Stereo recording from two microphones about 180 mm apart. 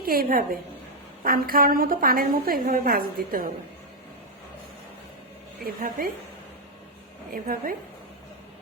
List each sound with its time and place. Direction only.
0.0 s a woman's voice: 55° right (ahead or behind)
5.6 s a woman's voice: 50° right (ahead or behind)
7.3 s a woman's voice: 50° right (ahead or behind)